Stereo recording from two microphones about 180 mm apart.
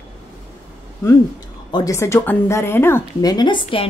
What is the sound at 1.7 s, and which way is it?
A woman's voice, 15° left (ahead or behind).